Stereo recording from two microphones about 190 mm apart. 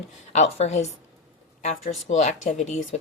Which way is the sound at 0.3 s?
35° left (ahead or behind).